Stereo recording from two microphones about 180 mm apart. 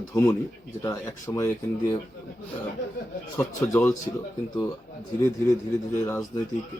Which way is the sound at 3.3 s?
15° left (ahead or behind).